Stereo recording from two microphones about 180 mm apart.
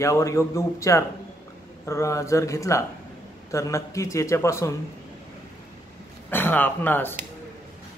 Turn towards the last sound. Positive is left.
turn(degrees=10)  # may be behind; listen again after turning